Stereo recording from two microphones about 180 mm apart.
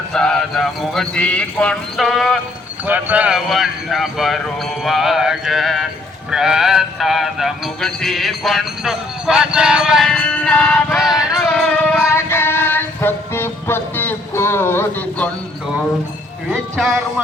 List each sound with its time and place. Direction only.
0.1 s speech: 5° left (ahead or behind)
11.1 s music: 20° left (ahead or behind)
11.3 s music: 5° left (ahead or behind)
16.5 s speech: centre (ahead or behind)